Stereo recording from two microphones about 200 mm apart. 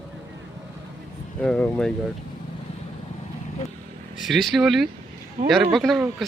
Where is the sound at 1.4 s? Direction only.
5° left (ahead or behind).